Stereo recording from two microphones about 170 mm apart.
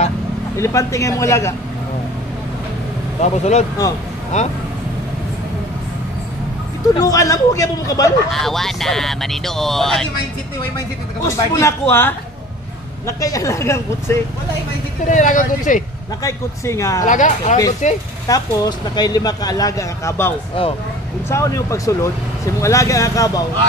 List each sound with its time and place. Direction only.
0.6 s speech: 20° left (ahead or behind)
3.2 s speech: 40° left (ahead or behind)
7.0 s speech: 20° left (ahead or behind)
8.3 s speech: centre (ahead or behind)
11.2 s speech: 15° left (ahead or behind)
15.0 s speech: 50° left (ahead or behind)
16.2 s speech: 15° left (ahead or behind)
17.0 s speech: 45° left (ahead or behind)
18.2 s speech: 20° left (ahead or behind)